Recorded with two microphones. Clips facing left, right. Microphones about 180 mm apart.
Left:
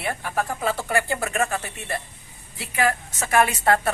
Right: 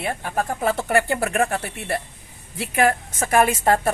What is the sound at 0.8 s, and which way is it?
A woman's voice, 55° right (ahead or behind).